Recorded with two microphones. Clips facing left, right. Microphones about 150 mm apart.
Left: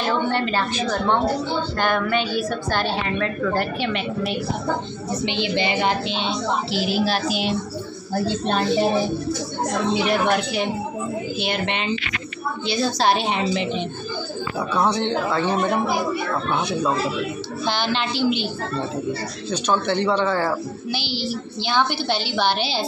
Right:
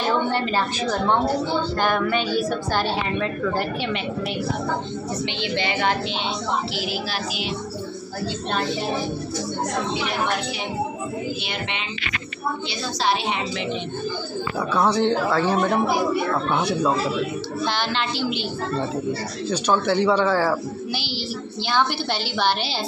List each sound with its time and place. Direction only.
0.3 s a woman's voice: 10° right (ahead or behind)
5.2 s a woman's voice: 15° left (ahead or behind)
7.1 s a woman's voice: 45° left (ahead or behind)
12.6 s a woman's voice: 40° left (ahead or behind)
14.7 s a woman's voice: 5° right (ahead or behind)
17.6 s a woman's voice: centre (ahead or behind)
19.5 s a woman's voice: 10° right (ahead or behind)